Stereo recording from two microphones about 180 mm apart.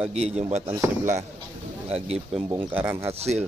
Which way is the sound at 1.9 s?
35° right (ahead or behind).